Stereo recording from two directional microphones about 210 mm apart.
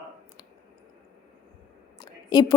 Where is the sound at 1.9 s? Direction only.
20° left (ahead or behind).